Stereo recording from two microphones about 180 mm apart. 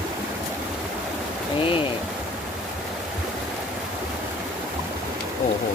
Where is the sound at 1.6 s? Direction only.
30° left (ahead or behind).